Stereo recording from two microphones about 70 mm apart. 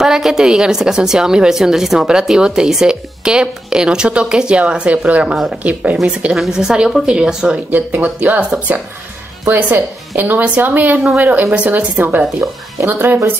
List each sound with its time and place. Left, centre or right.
0.0 s a woman's voice: centre
5.6 s speech: right
6.3 s a woman's voice: centre
9.5 s speech: right